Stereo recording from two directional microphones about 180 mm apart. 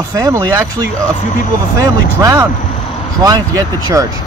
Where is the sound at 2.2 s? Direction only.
15° right (ahead or behind).